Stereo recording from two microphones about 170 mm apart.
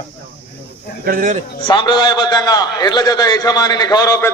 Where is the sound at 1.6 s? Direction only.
30° left (ahead or behind).